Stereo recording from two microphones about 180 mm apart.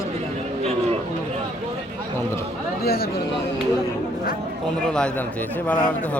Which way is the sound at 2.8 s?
60° left (ahead or behind).